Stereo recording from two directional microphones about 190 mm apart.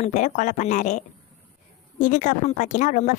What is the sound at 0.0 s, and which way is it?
Speech, 40° left (ahead or behind).